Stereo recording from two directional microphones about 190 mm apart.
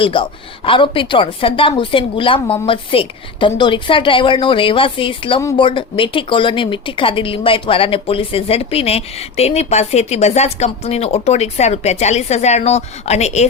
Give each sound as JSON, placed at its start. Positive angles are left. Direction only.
{"t": 0.0, "sound": "a woman's voice", "side_deg": 25}